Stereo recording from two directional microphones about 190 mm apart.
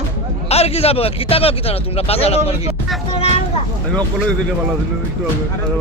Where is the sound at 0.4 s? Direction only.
35° left (ahead or behind).